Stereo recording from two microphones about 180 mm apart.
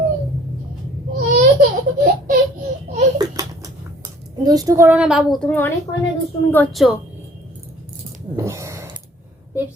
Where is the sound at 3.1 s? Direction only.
20° right (ahead or behind).